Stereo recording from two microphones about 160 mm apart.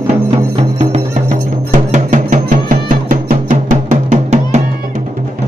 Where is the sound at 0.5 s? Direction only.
40° right (ahead or behind).